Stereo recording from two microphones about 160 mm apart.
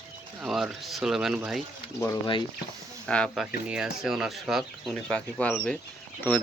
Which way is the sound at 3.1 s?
5° left (ahead or behind).